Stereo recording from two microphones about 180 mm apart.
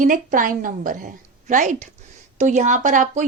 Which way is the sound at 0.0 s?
50° right (ahead or behind).